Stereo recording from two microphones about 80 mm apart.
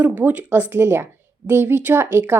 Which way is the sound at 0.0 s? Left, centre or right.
Centre.